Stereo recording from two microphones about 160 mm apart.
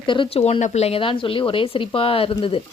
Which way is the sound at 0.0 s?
30° left (ahead or behind).